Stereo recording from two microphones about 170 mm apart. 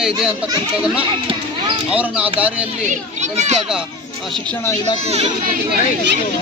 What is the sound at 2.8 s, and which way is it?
Speech, 45° right (ahead or behind).